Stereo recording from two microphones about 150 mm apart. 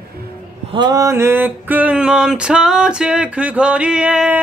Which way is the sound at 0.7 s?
25° right (ahead or behind).